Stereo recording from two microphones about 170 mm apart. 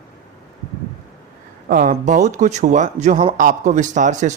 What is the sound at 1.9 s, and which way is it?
Speech, 45° right (ahead or behind).